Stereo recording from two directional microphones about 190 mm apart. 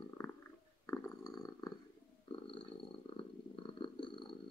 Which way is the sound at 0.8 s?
15° left (ahead or behind).